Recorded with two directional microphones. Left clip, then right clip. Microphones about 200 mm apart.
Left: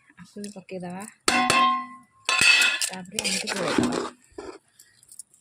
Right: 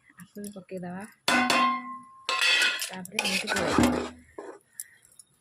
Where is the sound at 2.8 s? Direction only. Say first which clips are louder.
Left 1 dB; 15° left (ahead or behind).